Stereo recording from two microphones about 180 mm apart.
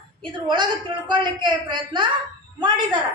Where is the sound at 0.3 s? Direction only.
25° right (ahead or behind).